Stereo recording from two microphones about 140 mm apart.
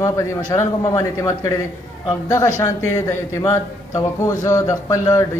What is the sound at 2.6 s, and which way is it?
A man's voice, 20° left (ahead or behind).